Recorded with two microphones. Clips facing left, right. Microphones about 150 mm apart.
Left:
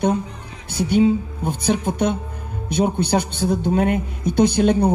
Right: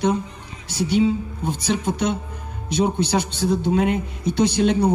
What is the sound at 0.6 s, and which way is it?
Speech, 55° left (ahead or behind).